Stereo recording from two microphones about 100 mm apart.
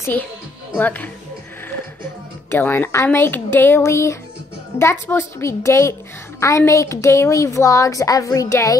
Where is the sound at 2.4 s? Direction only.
25° left (ahead or behind).